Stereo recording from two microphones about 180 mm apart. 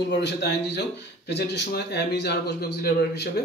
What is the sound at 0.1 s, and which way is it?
Speech, 70° left (ahead or behind).